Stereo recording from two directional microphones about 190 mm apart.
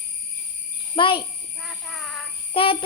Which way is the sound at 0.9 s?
25° left (ahead or behind).